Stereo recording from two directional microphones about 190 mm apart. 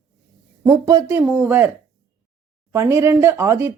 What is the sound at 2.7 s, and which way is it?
Speech, 15° right (ahead or behind).